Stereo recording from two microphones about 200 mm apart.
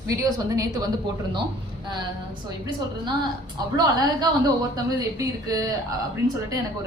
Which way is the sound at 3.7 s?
20° right (ahead or behind).